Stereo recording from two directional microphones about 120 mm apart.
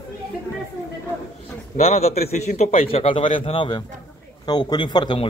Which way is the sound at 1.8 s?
60° left (ahead or behind).